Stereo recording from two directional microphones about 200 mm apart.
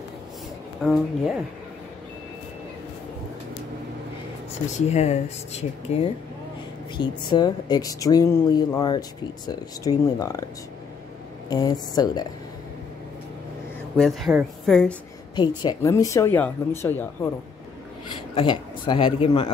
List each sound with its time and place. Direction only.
0.8 s a woman's voice: centre (ahead or behind)
4.7 s speech: 35° left (ahead or behind)
7.0 s a woman's voice: 20° left (ahead or behind)
11.5 s a woman's voice: 20° left (ahead or behind)
13.9 s a woman's voice: centre (ahead or behind)
15.3 s speech: 20° left (ahead or behind)
18.3 s a woman's voice: 25° left (ahead or behind)